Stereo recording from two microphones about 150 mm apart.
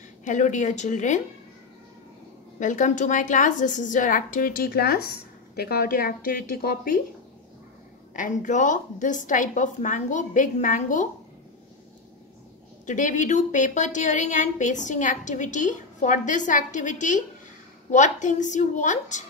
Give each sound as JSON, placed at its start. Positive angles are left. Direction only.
{"t": 0.2, "sound": "a woman's voice", "side_deg": 55}
{"t": 2.6, "sound": "a woman's voice", "side_deg": 60}
{"t": 8.1, "sound": "a woman's voice", "side_deg": 60}
{"t": 12.8, "sound": "a woman's voice", "side_deg": 55}